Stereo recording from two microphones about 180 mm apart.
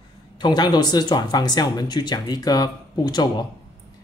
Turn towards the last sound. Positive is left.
turn(degrees=25)  # may be behind; listen again after turning